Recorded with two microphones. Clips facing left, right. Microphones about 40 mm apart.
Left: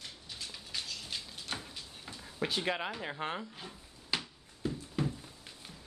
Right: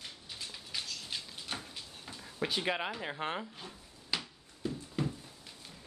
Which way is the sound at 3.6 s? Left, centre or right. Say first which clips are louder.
Left 1 dB; centre.